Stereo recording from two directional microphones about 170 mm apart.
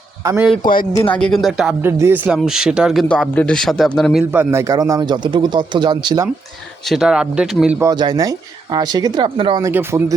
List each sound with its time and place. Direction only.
0.2 s a man's voice: 20° right (ahead or behind)
0.9 s speech: 10° left (ahead or behind)
4.2 s a man's voice: 15° right (ahead or behind)
6.8 s speech: centre (ahead or behind)
7.8 s a man's voice: 25° right (ahead or behind)
9.6 s speech: 15° right (ahead or behind)